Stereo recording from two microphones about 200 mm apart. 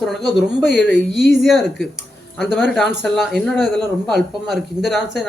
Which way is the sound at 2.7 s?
Centre (ahead or behind).